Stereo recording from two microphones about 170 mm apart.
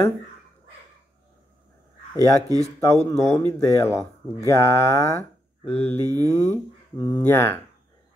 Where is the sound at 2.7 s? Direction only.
20° left (ahead or behind).